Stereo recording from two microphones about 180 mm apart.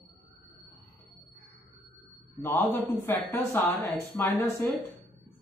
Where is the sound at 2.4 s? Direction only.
10° left (ahead or behind).